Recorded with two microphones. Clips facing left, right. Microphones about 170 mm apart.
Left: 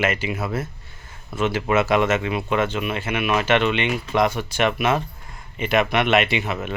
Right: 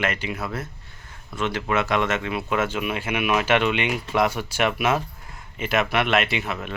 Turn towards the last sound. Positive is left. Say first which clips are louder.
# left 3 dB
turn(degrees=0)  # may be behind; listen again after turning